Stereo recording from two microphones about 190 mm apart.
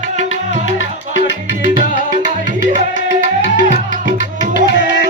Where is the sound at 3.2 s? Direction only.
45° right (ahead or behind).